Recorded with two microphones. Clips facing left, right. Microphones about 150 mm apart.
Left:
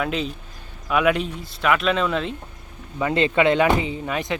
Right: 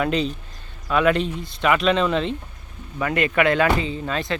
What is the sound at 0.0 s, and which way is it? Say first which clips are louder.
Speech: right 3 dB; 5° left (ahead or behind).